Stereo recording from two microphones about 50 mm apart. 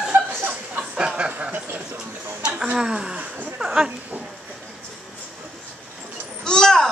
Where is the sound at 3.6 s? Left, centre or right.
Centre.